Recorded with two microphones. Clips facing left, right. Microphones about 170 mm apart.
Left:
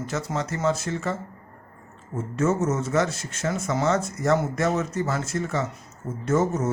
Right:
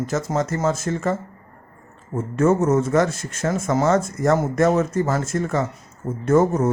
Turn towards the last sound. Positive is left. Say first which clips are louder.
# right 6 dB
turn(degrees=-55)  # may be behind; listen again after turning